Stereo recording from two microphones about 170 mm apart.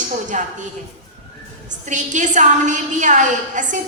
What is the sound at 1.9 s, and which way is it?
A woman's voice, 45° right (ahead or behind).